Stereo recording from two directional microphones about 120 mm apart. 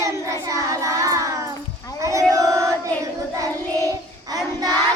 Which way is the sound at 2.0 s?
25° right (ahead or behind).